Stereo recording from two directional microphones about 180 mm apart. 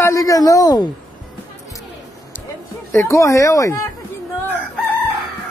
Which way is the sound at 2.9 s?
15° left (ahead or behind).